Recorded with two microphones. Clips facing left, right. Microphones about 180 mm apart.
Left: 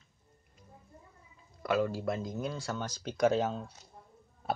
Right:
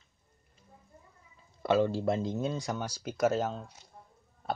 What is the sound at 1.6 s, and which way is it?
Speech, 25° right (ahead or behind).